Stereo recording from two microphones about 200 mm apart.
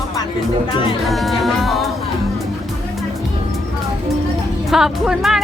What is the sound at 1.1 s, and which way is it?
Speech, centre (ahead or behind).